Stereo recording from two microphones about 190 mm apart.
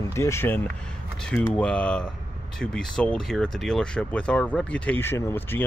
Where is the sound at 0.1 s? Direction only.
15° left (ahead or behind).